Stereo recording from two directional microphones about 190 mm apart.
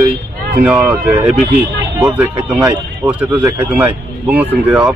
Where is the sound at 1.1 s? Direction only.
30° right (ahead or behind).